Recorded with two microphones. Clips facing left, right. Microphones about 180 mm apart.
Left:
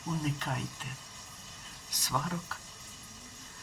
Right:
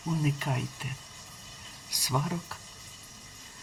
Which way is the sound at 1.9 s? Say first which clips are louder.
Right 3 dB; 10° right (ahead or behind).